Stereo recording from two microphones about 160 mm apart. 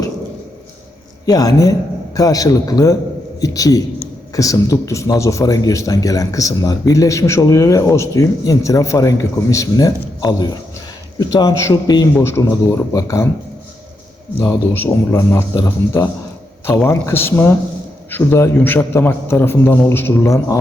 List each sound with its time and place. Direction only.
1.2 s a man's voice: 20° left (ahead or behind)
14.3 s a man's voice: 15° left (ahead or behind)